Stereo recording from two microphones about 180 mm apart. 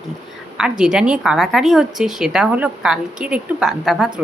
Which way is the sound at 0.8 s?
5° right (ahead or behind).